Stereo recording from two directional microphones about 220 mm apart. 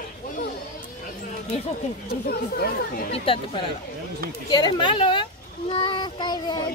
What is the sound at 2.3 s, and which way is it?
Speech, 45° left (ahead or behind).